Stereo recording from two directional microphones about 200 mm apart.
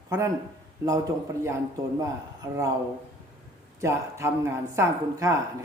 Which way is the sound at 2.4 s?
15° right (ahead or behind).